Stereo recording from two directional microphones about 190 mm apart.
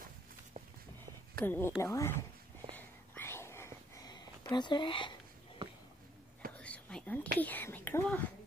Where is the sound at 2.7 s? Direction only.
10° left (ahead or behind).